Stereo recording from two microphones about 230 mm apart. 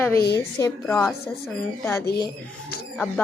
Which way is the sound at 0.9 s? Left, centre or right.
Centre.